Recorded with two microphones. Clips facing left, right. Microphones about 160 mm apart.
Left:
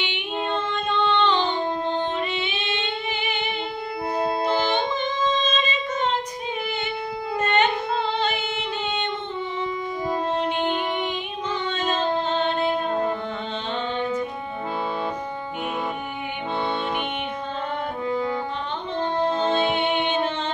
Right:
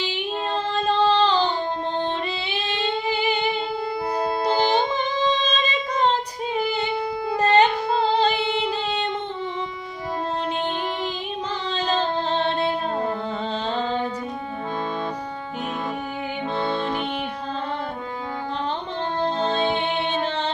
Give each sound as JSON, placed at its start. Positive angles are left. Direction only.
{"t": 0.0, "sound": "child singing", "side_deg": -35}
{"t": 4.6, "sound": "female singing", "side_deg": -35}
{"t": 11.7, "sound": "music", "side_deg": -35}
{"t": 19.2, "sound": "music", "side_deg": 5}